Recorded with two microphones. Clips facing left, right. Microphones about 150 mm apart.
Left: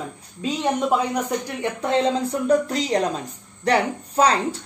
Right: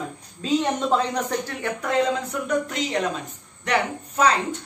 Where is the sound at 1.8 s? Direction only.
30° left (ahead or behind).